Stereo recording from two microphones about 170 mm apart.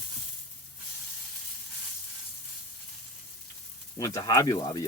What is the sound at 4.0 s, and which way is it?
Speech, 20° left (ahead or behind).